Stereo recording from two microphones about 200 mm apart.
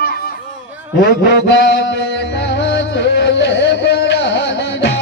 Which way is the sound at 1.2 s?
60° left (ahead or behind).